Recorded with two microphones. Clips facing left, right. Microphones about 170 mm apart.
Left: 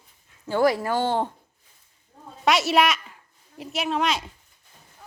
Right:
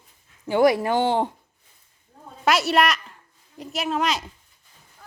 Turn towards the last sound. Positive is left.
turn(degrees=0)  # may be behind; listen again after turning